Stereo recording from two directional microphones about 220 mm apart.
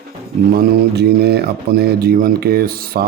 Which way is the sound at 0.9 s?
45° right (ahead or behind).